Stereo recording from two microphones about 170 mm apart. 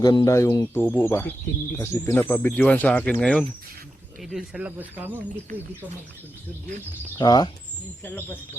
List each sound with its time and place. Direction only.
0.0 s speech: 25° left (ahead or behind); by 5.2 s 10° right (ahead or behind)
7.2 s speech: 25° left (ahead or behind)
8.0 s speech: 10° left (ahead or behind)